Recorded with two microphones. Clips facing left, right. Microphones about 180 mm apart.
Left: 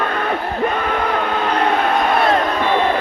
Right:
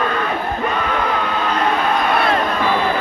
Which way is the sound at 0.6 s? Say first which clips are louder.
Left 2 dB; 50° left (ahead or behind).